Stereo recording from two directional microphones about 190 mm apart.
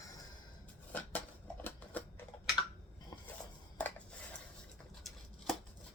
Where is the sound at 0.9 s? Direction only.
10° left (ahead or behind).